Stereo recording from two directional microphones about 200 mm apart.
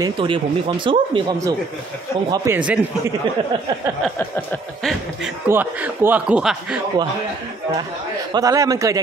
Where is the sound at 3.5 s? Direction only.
25° right (ahead or behind).